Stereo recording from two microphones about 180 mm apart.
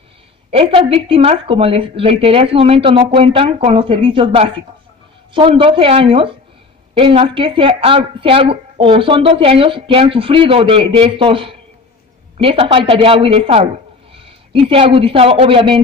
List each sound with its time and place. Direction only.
0.5 s a woman's voice: 30° right (ahead or behind)